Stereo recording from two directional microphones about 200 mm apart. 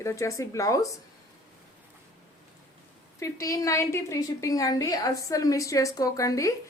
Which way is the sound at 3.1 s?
15° left (ahead or behind).